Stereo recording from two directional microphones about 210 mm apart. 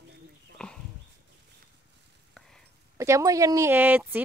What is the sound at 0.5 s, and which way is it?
Speech, 5° left (ahead or behind).